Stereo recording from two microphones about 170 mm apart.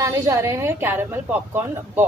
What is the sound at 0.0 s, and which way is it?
Speech, 20° right (ahead or behind).